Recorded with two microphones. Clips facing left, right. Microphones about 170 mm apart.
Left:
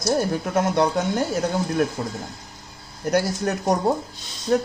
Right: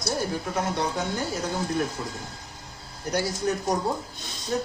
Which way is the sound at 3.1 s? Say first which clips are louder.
Left 4 dB; 60° left (ahead or behind).